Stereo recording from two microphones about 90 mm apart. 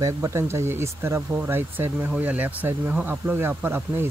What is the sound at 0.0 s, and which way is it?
Speech, 35° right (ahead or behind).